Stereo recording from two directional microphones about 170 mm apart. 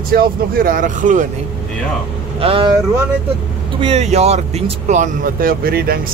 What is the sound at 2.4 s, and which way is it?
Speech, 35° right (ahead or behind).